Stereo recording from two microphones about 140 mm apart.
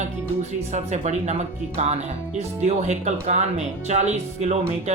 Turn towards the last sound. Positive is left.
turn(degrees=-50)  # may be behind; listen again after turning